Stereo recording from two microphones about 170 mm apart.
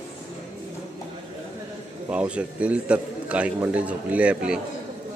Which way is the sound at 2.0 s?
5° right (ahead or behind).